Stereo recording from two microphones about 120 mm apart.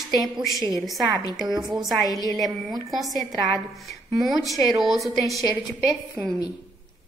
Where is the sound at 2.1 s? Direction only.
30° left (ahead or behind).